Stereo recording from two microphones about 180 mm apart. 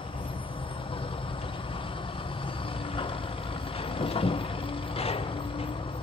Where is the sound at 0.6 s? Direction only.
30° left (ahead or behind).